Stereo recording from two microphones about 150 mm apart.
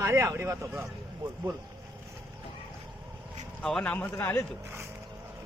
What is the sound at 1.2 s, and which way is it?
Speech, 35° right (ahead or behind).